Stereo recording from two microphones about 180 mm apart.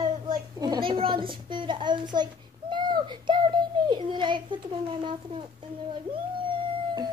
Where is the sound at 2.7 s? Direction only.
25° right (ahead or behind).